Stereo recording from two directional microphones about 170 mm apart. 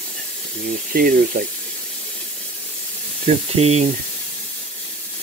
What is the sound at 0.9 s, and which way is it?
Speech, 55° right (ahead or behind).